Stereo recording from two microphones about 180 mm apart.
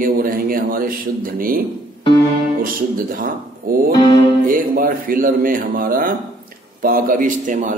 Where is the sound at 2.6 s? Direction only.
50° right (ahead or behind).